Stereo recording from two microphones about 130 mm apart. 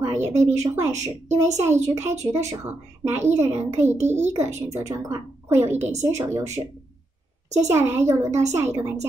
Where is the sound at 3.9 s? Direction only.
60° right (ahead or behind).